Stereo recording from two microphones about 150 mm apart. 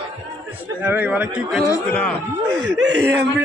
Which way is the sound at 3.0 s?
15° right (ahead or behind).